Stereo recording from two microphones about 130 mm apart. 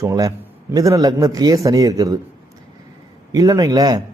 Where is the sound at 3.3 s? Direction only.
30° right (ahead or behind).